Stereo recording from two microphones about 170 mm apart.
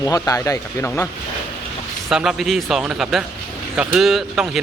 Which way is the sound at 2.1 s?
Centre (ahead or behind).